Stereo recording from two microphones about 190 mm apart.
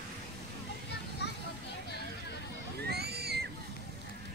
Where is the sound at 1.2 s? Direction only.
65° left (ahead or behind).